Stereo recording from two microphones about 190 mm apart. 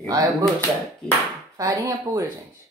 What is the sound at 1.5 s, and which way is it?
Speech, 15° right (ahead or behind).